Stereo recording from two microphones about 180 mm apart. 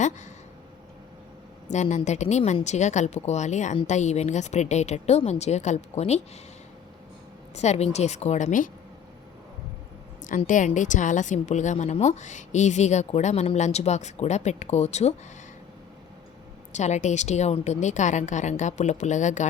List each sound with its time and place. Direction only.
1.7 s a woman's voice: 40° left (ahead or behind)
7.5 s a woman's voice: 40° left (ahead or behind)
10.2 s a woman's voice: 45° left (ahead or behind)
16.7 s a woman's voice: 40° left (ahead or behind)